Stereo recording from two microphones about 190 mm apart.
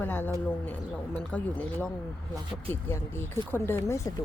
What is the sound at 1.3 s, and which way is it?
A woman's voice, 5° left (ahead or behind).